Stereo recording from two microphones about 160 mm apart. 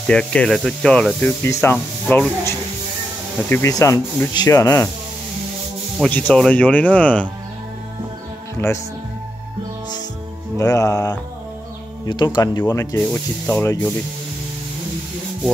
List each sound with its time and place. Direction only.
0.0 s speech: 5° left (ahead or behind)
3.4 s speech: 15° left (ahead or behind)
6.0 s speech: 10° left (ahead or behind)
10.6 s speech: 20° left (ahead or behind)
13.0 s speech: 10° left (ahead or behind)